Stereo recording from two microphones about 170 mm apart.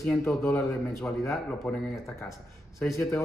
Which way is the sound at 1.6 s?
5° left (ahead or behind).